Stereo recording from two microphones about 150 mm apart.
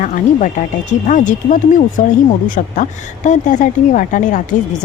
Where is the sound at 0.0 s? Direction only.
55° left (ahead or behind).